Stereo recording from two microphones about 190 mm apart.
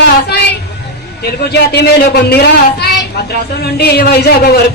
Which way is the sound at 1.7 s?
60° left (ahead or behind).